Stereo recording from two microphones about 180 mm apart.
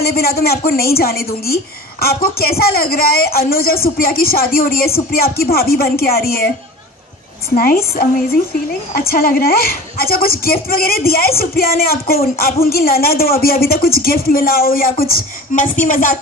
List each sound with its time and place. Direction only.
0.0 s speech: 60° left (ahead or behind)
8.9 s speech: 55° left (ahead or behind)